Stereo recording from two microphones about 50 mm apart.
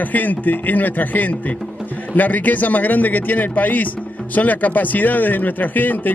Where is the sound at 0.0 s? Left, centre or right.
Left.